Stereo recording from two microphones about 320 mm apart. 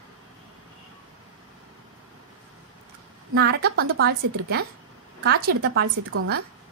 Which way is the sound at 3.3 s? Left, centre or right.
Right.